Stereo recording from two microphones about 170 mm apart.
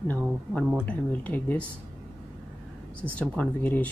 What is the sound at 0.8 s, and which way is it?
Speech, 10° left (ahead or behind).